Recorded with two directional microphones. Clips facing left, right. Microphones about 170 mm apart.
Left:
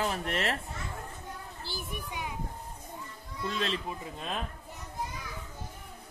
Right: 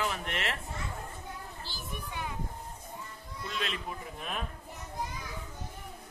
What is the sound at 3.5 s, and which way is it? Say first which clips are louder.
Speech: left 4 dB; 35° left (ahead or behind).